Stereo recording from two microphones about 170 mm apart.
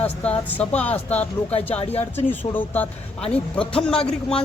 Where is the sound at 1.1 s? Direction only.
40° left (ahead or behind).